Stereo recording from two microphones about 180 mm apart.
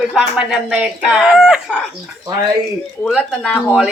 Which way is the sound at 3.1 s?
5° left (ahead or behind).